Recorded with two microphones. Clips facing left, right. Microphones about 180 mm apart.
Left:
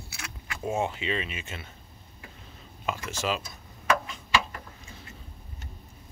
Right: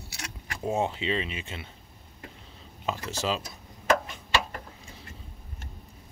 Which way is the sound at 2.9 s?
35° right (ahead or behind).